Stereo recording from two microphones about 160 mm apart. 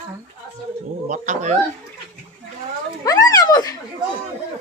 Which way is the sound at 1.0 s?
50° right (ahead or behind).